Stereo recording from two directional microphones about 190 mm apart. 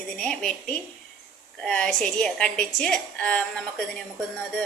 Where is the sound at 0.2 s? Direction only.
5° left (ahead or behind).